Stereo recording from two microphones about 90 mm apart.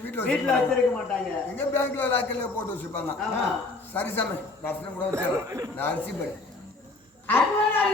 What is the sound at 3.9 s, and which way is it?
Speech, 20° left (ahead or behind).